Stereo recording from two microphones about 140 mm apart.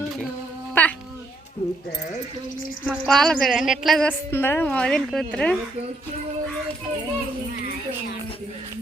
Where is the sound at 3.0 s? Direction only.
5° left (ahead or behind).